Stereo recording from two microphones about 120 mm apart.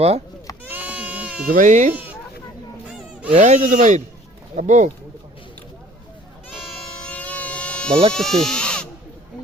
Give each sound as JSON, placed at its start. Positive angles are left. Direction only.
{"t": 0.7, "sound": "sheep", "side_deg": -15}
{"t": 1.5, "sound": "speech", "side_deg": -90}
{"t": 1.9, "sound": "speech", "side_deg": -15}
{"t": 3.3, "sound": "speech", "side_deg": -90}
{"t": 6.5, "sound": "goat", "side_deg": 0}
{"t": 8.1, "sound": "speech", "side_deg": 5}